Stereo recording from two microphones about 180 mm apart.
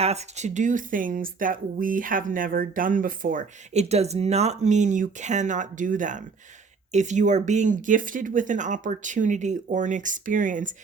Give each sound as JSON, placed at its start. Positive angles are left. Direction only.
{"t": 0.0, "sound": "speech", "side_deg": -40}